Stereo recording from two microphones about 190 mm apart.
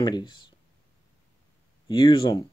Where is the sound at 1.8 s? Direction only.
25° left (ahead or behind).